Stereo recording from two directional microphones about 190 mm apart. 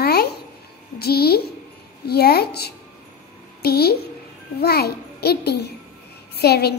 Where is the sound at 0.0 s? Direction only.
55° left (ahead or behind).